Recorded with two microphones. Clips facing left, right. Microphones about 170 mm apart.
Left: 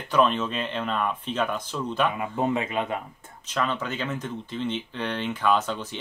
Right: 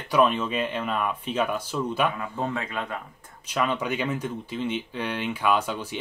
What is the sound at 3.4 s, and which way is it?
Speech, 10° right (ahead or behind).